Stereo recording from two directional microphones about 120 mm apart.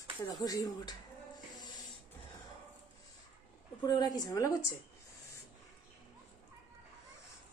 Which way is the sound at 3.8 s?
35° left (ahead or behind).